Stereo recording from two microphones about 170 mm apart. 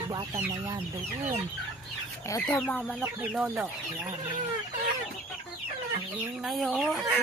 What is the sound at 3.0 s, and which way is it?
Speech, 10° right (ahead or behind).